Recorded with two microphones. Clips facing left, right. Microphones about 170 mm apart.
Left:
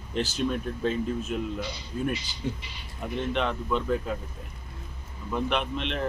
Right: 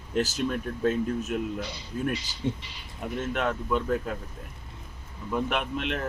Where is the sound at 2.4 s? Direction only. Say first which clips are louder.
Right 2 dB; 25° right (ahead or behind).